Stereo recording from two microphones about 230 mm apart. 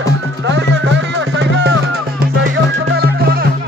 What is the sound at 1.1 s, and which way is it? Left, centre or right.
Music, right.